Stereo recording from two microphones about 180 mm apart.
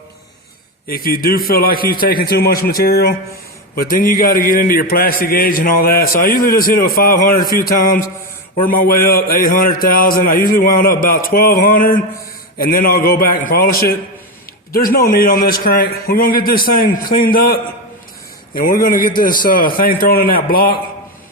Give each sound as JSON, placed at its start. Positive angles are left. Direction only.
{"t": 0.9, "sound": "a man's voice", "side_deg": 55}